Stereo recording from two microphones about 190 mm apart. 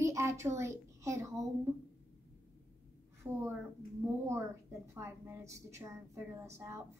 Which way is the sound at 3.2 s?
20° right (ahead or behind).